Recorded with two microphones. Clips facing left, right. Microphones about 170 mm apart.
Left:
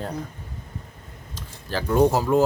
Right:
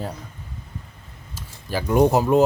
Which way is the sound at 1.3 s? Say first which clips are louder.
Right 2 dB; 10° right (ahead or behind).